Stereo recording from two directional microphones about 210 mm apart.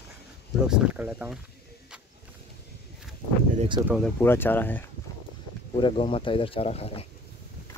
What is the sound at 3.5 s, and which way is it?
Speech, 20° right (ahead or behind).